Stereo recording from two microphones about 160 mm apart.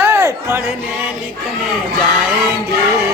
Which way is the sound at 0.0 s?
15° right (ahead or behind).